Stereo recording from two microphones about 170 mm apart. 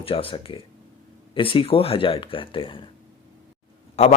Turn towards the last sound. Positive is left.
turn(degrees=40)  # may be behind; listen again after turning